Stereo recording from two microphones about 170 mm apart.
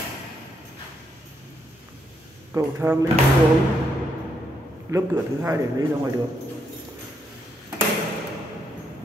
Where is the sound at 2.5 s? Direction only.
15° right (ahead or behind).